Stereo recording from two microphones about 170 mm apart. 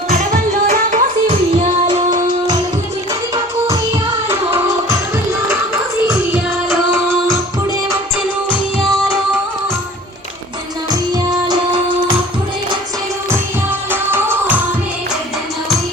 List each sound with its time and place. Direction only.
0.7 s music: 45° right (ahead or behind)
4.3 s music: 10° right (ahead or behind)
6.7 s music: 15° right (ahead or behind)
11.3 s music: 25° right (ahead or behind)
13.9 s music: 10° right (ahead or behind)